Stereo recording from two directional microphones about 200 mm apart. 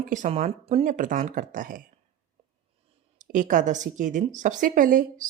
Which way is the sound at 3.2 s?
40° right (ahead or behind).